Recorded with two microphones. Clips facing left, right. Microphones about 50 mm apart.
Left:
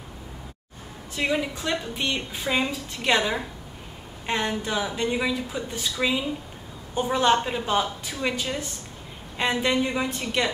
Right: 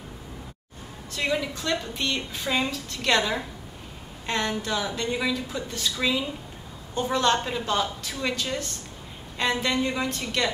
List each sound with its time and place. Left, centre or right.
1.1 s a woman's voice: centre